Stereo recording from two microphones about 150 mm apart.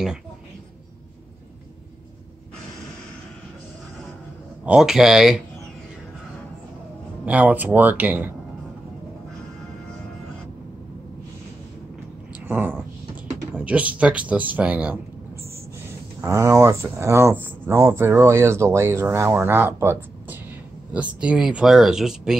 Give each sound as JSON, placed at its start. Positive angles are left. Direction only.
{"t": 4.6, "sound": "speech", "side_deg": -5}
{"t": 7.2, "sound": "speech", "side_deg": -10}
{"t": 12.4, "sound": "a sound", "side_deg": -15}
{"t": 13.5, "sound": "speech", "side_deg": -10}
{"t": 16.2, "sound": "speech", "side_deg": -20}